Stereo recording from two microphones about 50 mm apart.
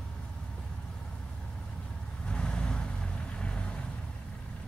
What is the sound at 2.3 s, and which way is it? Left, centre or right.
Vehicle, centre.